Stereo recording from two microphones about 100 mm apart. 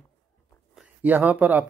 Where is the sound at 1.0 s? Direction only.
15° right (ahead or behind).